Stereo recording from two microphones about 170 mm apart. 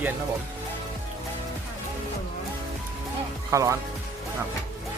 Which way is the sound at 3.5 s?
20° right (ahead or behind).